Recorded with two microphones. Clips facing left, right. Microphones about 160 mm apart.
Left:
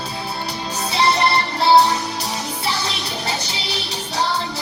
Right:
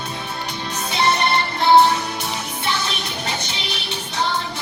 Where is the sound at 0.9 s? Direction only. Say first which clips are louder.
Left 1 dB; 35° left (ahead or behind).